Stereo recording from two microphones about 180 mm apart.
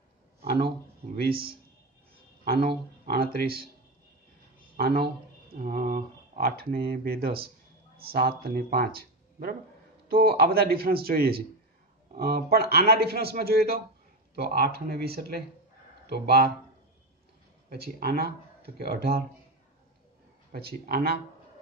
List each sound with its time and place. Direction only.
1.1 s speech: 60° right (ahead or behind)
2.4 s a man's voice: 60° right (ahead or behind)
4.7 s speech: 55° right (ahead or behind)
6.4 s speech: 60° right (ahead or behind)
17.6 s speech: 60° right (ahead or behind)
20.5 s speech: 60° right (ahead or behind)